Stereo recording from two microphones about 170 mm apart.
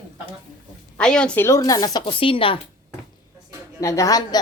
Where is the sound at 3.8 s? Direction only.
20° left (ahead or behind).